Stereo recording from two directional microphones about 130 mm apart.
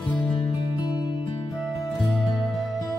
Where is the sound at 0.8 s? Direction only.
35° left (ahead or behind).